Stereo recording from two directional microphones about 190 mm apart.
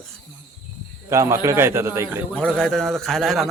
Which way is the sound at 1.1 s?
15° right (ahead or behind).